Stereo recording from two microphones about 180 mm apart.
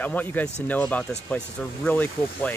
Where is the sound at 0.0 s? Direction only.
10° left (ahead or behind).